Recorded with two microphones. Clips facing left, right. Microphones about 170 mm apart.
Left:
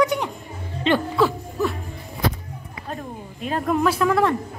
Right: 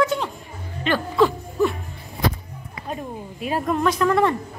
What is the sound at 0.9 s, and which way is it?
Speech, 25° left (ahead or behind).